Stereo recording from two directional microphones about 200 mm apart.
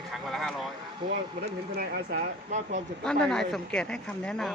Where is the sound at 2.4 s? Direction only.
35° right (ahead or behind).